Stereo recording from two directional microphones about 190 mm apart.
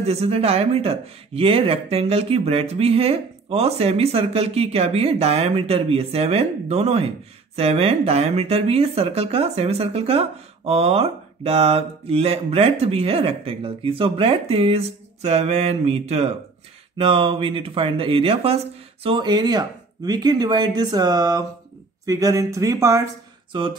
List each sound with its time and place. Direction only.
0.0 s speech: 30° right (ahead or behind); by 23.0 s 15° right (ahead or behind)
23.5 s speech: 25° right (ahead or behind)